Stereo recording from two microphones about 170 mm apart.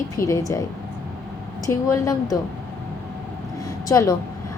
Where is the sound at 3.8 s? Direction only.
20° left (ahead or behind).